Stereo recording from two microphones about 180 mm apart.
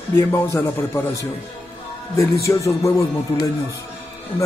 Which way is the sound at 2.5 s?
15° left (ahead or behind).